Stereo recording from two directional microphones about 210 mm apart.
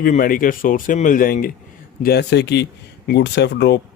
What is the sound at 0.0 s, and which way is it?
Speech, 40° left (ahead or behind).